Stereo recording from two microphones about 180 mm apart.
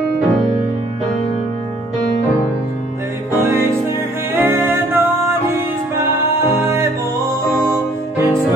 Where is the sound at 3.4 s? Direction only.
15° right (ahead or behind).